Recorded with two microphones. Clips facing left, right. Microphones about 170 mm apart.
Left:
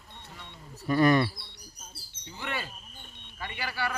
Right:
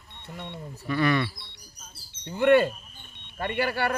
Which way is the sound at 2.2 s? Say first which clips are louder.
Right 18 dB; 55° right (ahead or behind).